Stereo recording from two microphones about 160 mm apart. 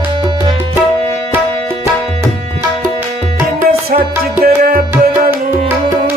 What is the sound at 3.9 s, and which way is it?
Music, 70° right (ahead or behind).